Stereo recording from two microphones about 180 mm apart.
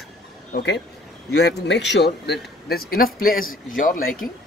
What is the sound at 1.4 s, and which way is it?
A man's voice, 70° left (ahead or behind).